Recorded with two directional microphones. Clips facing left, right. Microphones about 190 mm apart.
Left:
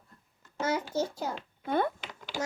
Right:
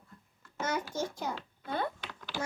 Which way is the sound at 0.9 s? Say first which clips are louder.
Left 4 dB; 10° left (ahead or behind).